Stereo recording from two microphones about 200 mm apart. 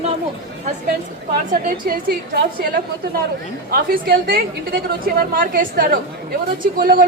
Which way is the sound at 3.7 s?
50° right (ahead or behind).